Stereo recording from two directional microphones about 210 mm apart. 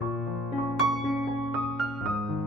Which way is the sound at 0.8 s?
Centre (ahead or behind).